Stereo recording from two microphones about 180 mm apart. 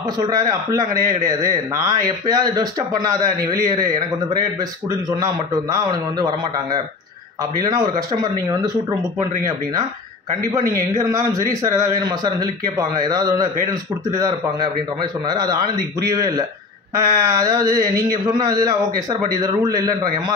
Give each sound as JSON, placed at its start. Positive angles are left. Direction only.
{"t": 0.3, "sound": "a man's voice", "side_deg": -20}
{"t": 10.5, "sound": "a man's voice", "side_deg": -20}